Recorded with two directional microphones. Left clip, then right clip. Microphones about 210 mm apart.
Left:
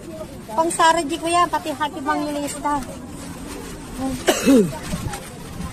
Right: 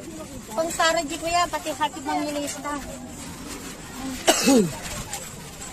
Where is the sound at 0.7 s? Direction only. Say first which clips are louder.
Left 5 dB; 10° left (ahead or behind).